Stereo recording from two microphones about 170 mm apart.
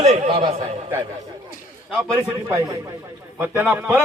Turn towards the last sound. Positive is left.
turn(degrees=-15)  # may be behind; listen again after turning